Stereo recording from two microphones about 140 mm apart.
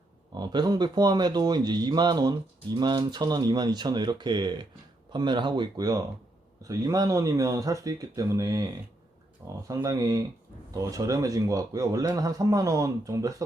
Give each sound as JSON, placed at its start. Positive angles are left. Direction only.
{"t": 0.3, "sound": "a man's voice", "side_deg": -30}
{"t": 9.6, "sound": "a man's voice", "side_deg": -25}